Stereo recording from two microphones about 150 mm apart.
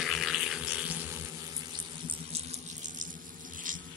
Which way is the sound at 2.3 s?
40° right (ahead or behind).